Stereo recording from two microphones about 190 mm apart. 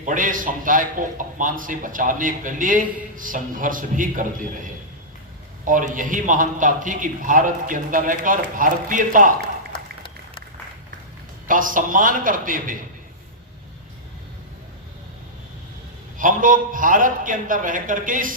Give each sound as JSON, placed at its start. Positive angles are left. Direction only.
{"t": 0.0, "sound": "a man's voice", "side_deg": -45}
{"t": 5.9, "sound": "a man's voice", "side_deg": -45}
{"t": 11.4, "sound": "a man's voice", "side_deg": -45}
{"t": 16.1, "sound": "a man's voice", "side_deg": -45}